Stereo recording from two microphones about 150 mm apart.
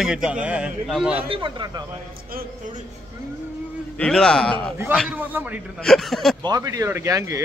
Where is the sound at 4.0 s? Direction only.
5° left (ahead or behind).